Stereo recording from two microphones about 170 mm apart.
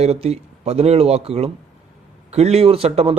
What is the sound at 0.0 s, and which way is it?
A man's voice, 40° right (ahead or behind).